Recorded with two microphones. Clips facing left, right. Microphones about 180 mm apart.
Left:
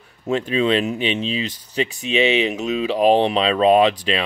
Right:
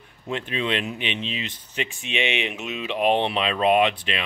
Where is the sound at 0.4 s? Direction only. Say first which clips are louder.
Left 8 dB; 40° left (ahead or behind).